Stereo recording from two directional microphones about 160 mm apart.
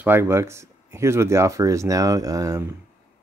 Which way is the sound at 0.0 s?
15° right (ahead or behind).